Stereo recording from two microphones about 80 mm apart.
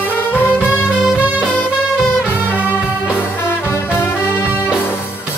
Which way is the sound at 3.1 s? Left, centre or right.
Left.